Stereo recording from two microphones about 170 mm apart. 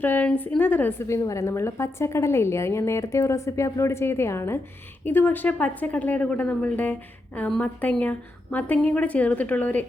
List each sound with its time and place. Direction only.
0.0 s a woman's voice: 10° left (ahead or behind)